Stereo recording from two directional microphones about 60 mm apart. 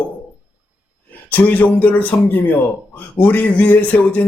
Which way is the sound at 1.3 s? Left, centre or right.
Left.